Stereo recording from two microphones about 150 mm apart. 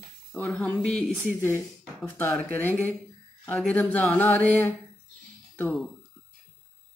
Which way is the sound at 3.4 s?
10° left (ahead or behind).